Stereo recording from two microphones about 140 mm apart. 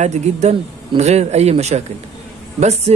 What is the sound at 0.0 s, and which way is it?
Speech, 55° right (ahead or behind).